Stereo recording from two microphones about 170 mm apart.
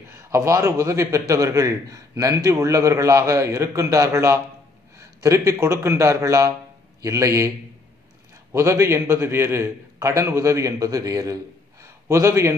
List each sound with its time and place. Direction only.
0.1 s a man's voice: 15° right (ahead or behind)
8.5 s a man's voice: 15° right (ahead or behind)
11.8 s a sound: 15° right (ahead or behind)